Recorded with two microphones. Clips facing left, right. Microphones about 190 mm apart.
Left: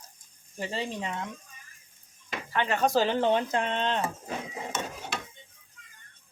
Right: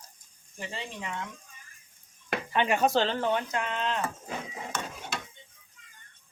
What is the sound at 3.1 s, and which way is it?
Speech, 25° left (ahead or behind).